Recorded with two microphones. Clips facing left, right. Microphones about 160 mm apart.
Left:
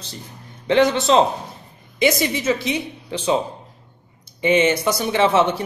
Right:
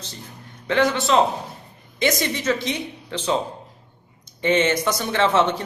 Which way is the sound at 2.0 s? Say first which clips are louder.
Left 3 dB; 10° left (ahead or behind).